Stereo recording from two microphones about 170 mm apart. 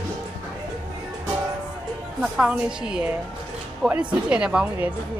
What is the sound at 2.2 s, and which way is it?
A woman's voice, 5° right (ahead or behind).